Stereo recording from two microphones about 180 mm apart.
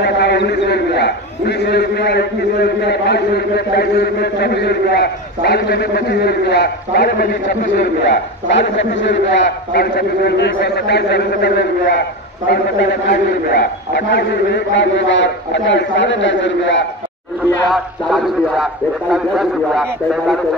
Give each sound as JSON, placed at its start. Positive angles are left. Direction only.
{"t": 0.0, "sound": "a man's voice", "side_deg": 65}
{"t": 13.1, "sound": "a man's voice", "side_deg": 60}
{"t": 17.6, "sound": "a man's voice", "side_deg": 0}